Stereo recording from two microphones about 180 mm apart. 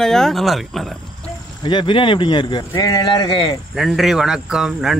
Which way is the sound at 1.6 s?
25° left (ahead or behind).